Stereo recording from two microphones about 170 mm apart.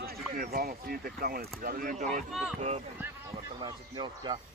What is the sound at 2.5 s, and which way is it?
Speech, 40° right (ahead or behind).